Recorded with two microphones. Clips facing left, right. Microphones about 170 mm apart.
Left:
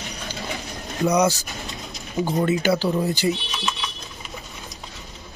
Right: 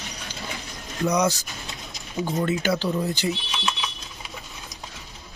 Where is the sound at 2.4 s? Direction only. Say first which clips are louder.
Left 3 dB; 5° left (ahead or behind).